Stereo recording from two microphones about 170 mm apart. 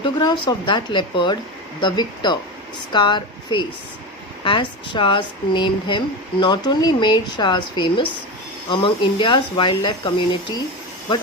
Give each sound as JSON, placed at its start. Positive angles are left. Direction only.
{"t": 0.0, "sound": "speech", "side_deg": 25}